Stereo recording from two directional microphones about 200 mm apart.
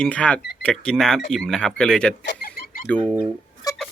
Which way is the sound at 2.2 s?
50° left (ahead or behind).